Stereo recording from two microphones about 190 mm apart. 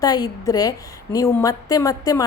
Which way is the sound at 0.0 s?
20° left (ahead or behind).